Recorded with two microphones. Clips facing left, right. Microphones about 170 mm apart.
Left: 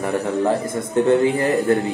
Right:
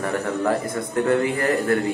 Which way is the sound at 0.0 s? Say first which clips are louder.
Left 3 dB; 15° left (ahead or behind).